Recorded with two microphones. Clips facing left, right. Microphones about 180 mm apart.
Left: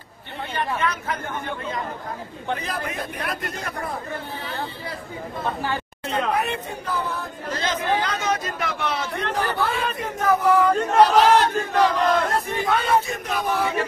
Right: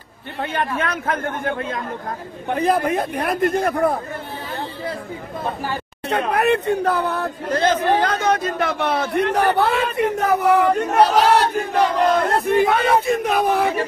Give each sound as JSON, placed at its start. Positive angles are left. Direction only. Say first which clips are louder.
{"t": 0.4, "sound": "speech", "louder": "right 3 dB", "side_deg": -50}
{"t": 2.5, "sound": "battle cry", "louder": "right 11 dB", "side_deg": -55}
{"t": 6.0, "sound": "speech", "louder": "right 6 dB", "side_deg": -70}
{"t": 11.0, "sound": "battle cry", "louder": "even", "side_deg": -35}
{"t": 12.2, "sound": "battle cry", "louder": "right 7 dB", "side_deg": -60}